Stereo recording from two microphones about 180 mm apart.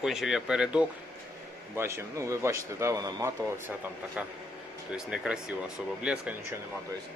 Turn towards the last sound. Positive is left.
turn(degrees=-5)  # may be behind; listen again after turning